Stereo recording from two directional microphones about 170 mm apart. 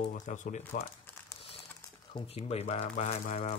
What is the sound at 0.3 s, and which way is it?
Speech, 45° left (ahead or behind).